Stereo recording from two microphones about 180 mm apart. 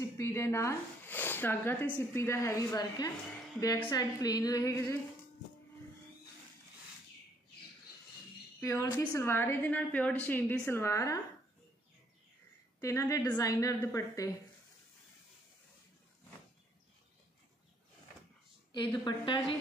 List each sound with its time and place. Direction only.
0.0 s a woman's voice: 15° left (ahead or behind)
8.5 s a woman's voice: 15° left (ahead or behind)
12.8 s a woman's voice: 20° left (ahead or behind)
18.9 s a woman's voice: 25° left (ahead or behind)